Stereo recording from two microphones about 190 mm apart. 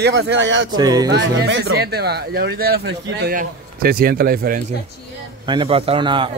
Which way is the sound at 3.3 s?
50° right (ahead or behind).